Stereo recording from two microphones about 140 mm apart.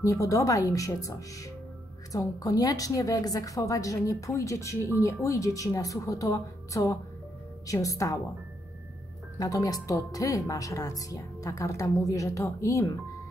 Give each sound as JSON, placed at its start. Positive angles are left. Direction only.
{"t": 0.0, "sound": "speech", "side_deg": 25}
{"t": 9.4, "sound": "speech", "side_deg": 25}